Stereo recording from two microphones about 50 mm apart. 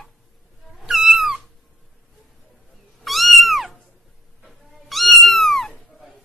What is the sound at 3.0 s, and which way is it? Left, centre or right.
Cat, centre.